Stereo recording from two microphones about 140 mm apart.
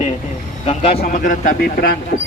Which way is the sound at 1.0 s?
70° left (ahead or behind).